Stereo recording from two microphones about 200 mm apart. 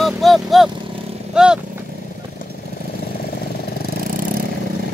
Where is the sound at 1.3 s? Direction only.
5° right (ahead or behind).